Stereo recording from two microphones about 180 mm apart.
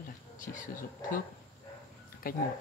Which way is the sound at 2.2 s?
55° left (ahead or behind).